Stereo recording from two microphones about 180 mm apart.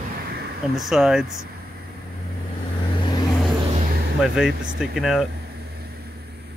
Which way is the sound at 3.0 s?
25° left (ahead or behind).